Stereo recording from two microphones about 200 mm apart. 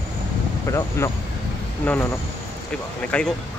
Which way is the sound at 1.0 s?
15° left (ahead or behind).